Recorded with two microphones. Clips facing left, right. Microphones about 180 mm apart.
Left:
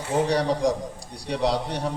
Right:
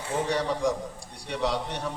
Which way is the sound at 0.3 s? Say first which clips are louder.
Left 4 dB; 35° left (ahead or behind).